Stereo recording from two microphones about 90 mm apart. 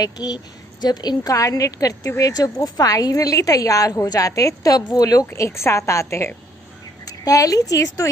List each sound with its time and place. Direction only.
0.0 s a woman's voice: 45° left (ahead or behind)
5.2 s a woman's voice: 30° left (ahead or behind)